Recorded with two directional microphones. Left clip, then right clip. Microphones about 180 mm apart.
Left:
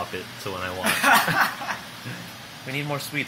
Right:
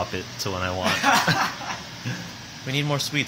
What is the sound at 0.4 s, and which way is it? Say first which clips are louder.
Speech: right 4 dB; 20° right (ahead or behind).